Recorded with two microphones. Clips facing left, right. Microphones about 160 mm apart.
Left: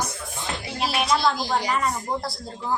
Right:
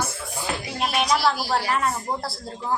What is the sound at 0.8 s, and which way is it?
A woman's voice, centre (ahead or behind).